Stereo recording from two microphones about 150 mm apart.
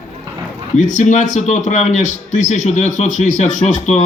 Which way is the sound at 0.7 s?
55° left (ahead or behind).